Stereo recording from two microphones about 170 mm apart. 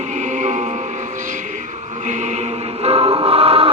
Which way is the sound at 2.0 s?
45° right (ahead or behind).